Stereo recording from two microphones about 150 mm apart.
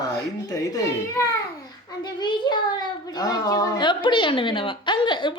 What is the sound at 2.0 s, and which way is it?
A child's voice, 30° left (ahead or behind).